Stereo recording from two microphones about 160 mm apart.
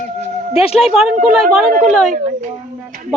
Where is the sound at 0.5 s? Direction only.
35° left (ahead or behind).